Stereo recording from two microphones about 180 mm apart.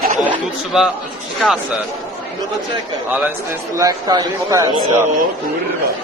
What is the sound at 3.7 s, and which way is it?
Speech, 20° right (ahead or behind).